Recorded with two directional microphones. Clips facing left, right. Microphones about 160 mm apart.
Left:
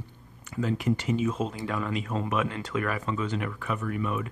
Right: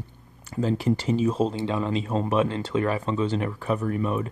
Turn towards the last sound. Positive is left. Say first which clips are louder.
# right 4 dB
turn(degrees=-35)  # may be behind; listen again after turning